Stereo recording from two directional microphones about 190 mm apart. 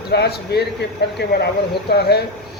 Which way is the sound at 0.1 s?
60° left (ahead or behind).